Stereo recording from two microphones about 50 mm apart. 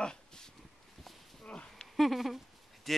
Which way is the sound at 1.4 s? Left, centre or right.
Centre.